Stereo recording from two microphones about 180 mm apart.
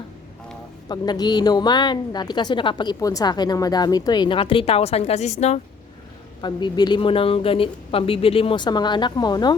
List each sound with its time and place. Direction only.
0.9 s a woman's voice: 20° left (ahead or behind); by 5.5 s 40° left (ahead or behind)
6.4 s a woman's voice: 25° left (ahead or behind)